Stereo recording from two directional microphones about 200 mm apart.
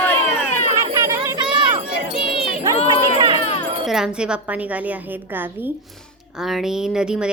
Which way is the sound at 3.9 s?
5° right (ahead or behind).